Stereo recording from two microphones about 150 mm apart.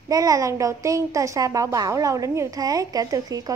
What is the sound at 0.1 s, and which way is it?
A woman's voice, 25° right (ahead or behind).